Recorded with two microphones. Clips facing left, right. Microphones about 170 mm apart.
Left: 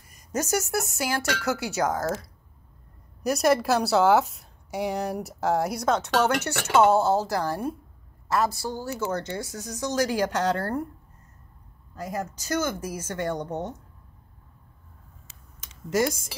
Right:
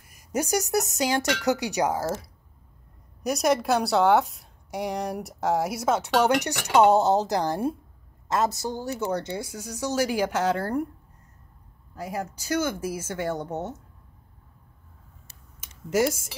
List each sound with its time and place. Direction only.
0.1 s speech: 10° right (ahead or behind)
3.2 s a woman's voice: centre (ahead or behind)
11.9 s speech: 10° right (ahead or behind)
15.9 s speech: 10° right (ahead or behind)